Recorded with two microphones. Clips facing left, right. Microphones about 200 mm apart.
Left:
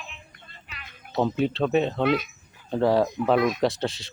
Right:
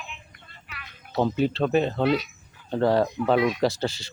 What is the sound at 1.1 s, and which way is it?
Speech, centre (ahead or behind).